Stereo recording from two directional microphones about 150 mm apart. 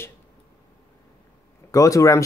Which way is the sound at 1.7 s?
20° left (ahead or behind).